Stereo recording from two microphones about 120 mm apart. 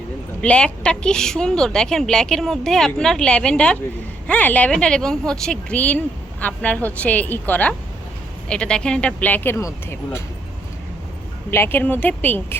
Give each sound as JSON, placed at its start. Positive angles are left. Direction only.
{"t": 0.4, "sound": "a woman's voice", "side_deg": 10}
{"t": 11.5, "sound": "speech", "side_deg": 20}